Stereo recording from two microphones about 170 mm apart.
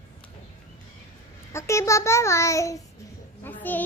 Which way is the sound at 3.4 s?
10° left (ahead or behind).